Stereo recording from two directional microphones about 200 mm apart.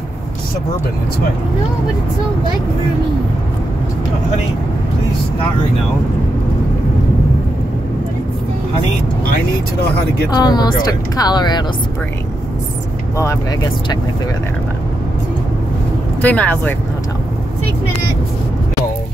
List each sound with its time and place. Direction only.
9.3 s speech: 50° left (ahead or behind)
10.3 s speech: 20° left (ahead or behind)
13.2 s speech: 15° left (ahead or behind)
16.2 s speech: 10° left (ahead or behind)